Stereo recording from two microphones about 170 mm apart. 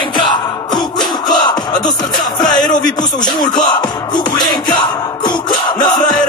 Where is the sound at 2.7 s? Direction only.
25° left (ahead or behind).